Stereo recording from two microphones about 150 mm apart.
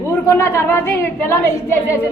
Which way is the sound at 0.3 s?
20° left (ahead or behind).